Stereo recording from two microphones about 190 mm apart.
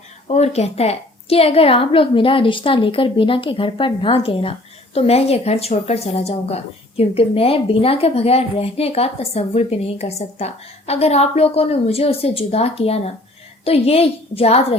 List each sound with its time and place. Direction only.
0.3 s a woman's voice: 35° left (ahead or behind)